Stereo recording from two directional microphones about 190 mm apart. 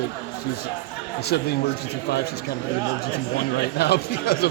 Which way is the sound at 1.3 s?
60° left (ahead or behind).